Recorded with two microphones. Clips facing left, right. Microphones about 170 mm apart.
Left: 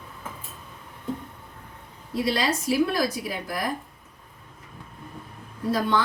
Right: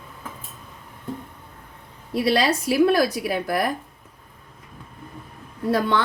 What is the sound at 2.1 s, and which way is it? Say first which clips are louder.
A woman's voice: right 5 dB; 70° right (ahead or behind).